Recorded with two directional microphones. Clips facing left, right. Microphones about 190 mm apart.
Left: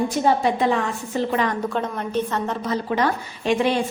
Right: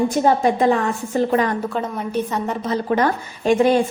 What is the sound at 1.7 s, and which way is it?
Speech, 10° right (ahead or behind).